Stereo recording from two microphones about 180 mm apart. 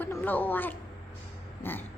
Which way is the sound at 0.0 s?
10° left (ahead or behind).